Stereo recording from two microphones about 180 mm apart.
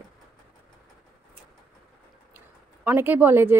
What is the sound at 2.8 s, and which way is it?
Speech, 10° right (ahead or behind).